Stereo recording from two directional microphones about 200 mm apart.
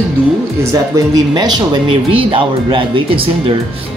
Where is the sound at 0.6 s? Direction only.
15° right (ahead or behind).